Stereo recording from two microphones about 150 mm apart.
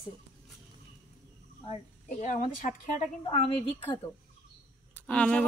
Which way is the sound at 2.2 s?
60° left (ahead or behind).